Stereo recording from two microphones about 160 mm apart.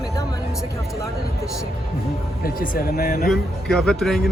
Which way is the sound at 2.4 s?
65° left (ahead or behind).